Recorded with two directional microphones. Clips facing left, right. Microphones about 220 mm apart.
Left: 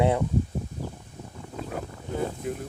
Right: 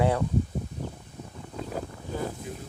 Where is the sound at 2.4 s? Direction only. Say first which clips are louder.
Left 7 dB; 60° left (ahead or behind).